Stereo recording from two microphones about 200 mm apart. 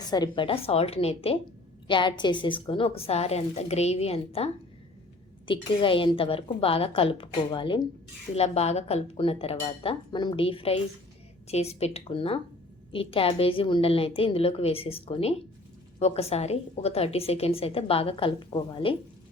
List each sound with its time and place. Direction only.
0.1 s a woman's voice: 20° left (ahead or behind)